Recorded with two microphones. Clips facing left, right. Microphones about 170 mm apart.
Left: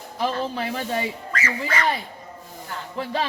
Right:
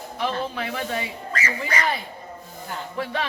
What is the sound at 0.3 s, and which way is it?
Speech, 35° left (ahead or behind).